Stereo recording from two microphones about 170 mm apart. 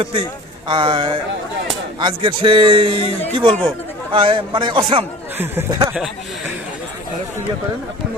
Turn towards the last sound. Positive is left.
turn(degrees=-5)  # may be behind; listen again after turning